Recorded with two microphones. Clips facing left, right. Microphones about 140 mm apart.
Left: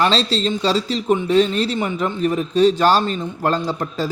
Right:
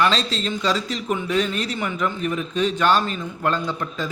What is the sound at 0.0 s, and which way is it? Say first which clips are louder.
Speech: left 3 dB; 30° left (ahead or behind).